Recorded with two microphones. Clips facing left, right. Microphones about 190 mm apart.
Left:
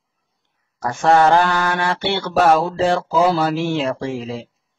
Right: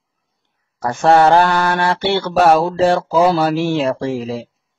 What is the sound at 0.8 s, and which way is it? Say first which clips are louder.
Speech: right 3 dB; 35° right (ahead or behind).